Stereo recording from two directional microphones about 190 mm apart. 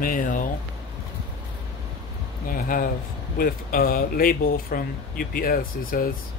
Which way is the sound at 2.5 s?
50° left (ahead or behind).